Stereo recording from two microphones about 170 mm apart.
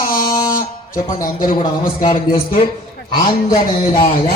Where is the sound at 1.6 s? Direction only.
30° left (ahead or behind).